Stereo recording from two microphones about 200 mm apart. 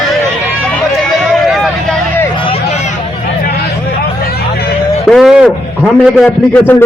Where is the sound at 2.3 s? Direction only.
25° left (ahead or behind).